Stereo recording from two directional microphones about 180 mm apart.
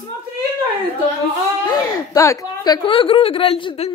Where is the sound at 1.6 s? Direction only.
20° left (ahead or behind).